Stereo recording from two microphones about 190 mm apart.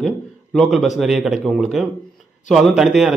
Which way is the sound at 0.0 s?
Centre (ahead or behind).